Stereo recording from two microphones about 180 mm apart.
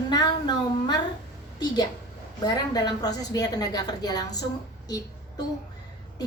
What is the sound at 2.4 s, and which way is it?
A woman's voice, 20° left (ahead or behind).